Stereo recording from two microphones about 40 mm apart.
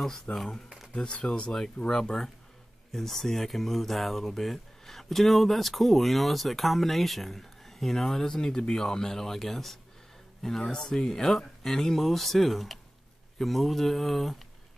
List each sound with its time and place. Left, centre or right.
0.0 s speech: centre
0.9 s speech: centre